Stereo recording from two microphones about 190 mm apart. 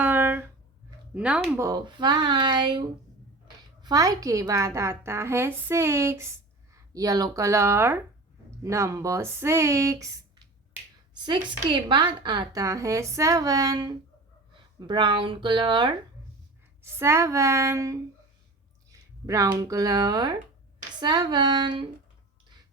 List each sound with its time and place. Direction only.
0.0 s a sound: 10° right (ahead or behind)
1.1 s speech: 5° right (ahead or behind)
1.6 s a woman's voice: 25° right (ahead or behind)
16.8 s a woman's voice: 15° right (ahead or behind)